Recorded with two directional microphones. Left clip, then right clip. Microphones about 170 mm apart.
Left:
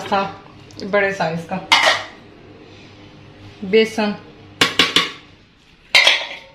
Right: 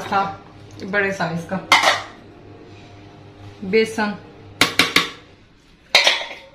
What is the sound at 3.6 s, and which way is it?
Speech, 40° left (ahead or behind).